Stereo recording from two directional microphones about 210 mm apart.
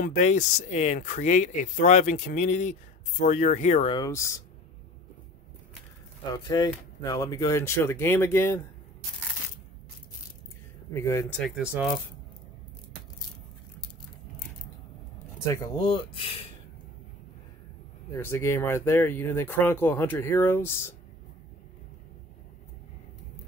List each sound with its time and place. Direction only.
0.0 s speech: 35° left (ahead or behind)
3.9 s speech: 15° left (ahead or behind)
6.3 s speech: 20° left (ahead or behind)
10.9 s speech: 15° left (ahead or behind)
11.4 s speech: 5° right (ahead or behind)
15.4 s speech: 15° left (ahead or behind)
15.9 s speech: 25° left (ahead or behind)
18.1 s speech: 10° left (ahead or behind)